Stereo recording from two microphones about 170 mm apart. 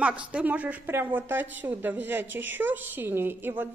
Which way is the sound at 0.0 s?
5° right (ahead or behind).